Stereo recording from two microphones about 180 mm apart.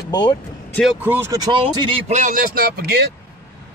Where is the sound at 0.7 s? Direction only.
Centre (ahead or behind); by 3.0 s 60° right (ahead or behind).